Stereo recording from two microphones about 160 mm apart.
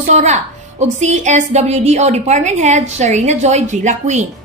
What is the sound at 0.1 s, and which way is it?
A woman's voice, 45° right (ahead or behind).